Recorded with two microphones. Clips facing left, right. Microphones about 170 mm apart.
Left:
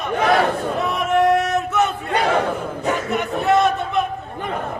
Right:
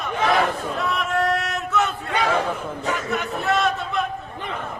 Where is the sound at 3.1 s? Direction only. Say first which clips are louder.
Left 7 dB; 20° left (ahead or behind).